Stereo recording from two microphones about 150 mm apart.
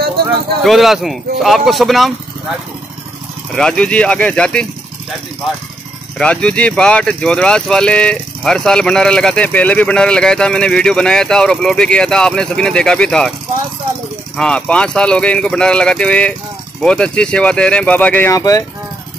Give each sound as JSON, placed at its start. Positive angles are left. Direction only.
{"t": 0.7, "sound": "speech", "side_deg": 0}
{"t": 3.5, "sound": "speech", "side_deg": 5}
{"t": 6.1, "sound": "speech", "side_deg": 5}
{"t": 14.3, "sound": "speech", "side_deg": 5}
{"t": 18.3, "sound": "speech", "side_deg": 20}